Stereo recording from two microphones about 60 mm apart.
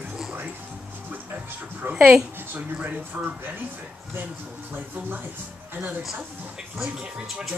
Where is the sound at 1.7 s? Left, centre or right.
Right.